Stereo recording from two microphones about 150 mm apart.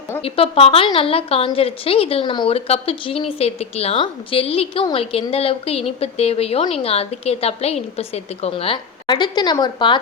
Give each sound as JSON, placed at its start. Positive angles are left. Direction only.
{"t": 0.2, "sound": "a woman's voice", "side_deg": 40}